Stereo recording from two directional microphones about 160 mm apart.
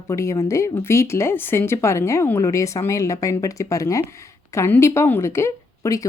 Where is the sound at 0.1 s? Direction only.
20° left (ahead or behind).